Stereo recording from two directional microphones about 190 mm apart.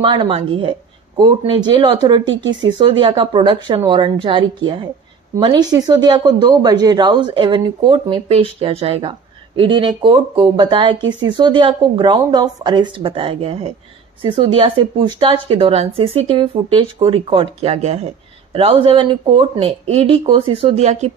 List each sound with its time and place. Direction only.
0.0 s a woman's voice: 25° right (ahead or behind)